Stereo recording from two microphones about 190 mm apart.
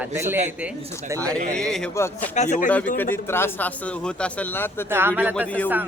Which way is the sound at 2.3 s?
40° left (ahead or behind).